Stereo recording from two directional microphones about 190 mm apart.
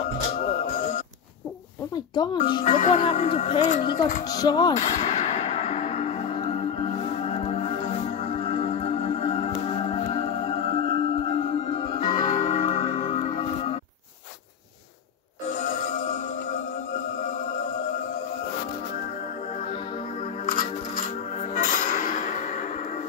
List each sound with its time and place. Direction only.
2.6 s speech: 40° left (ahead or behind); by 4.7 s 20° left (ahead or behind)
4.7 s music: 35° left (ahead or behind)
20.4 s music: 45° left (ahead or behind)